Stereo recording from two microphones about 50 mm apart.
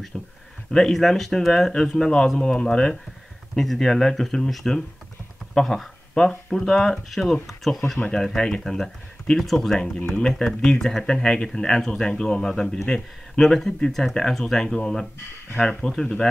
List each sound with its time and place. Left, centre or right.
0.1 s speech: centre
9.8 s speech: centre